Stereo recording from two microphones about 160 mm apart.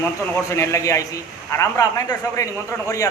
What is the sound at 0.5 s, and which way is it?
A man's voice, 20° left (ahead or behind).